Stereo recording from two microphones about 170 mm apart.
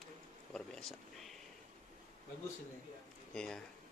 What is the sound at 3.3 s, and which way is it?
Speech, 5° left (ahead or behind).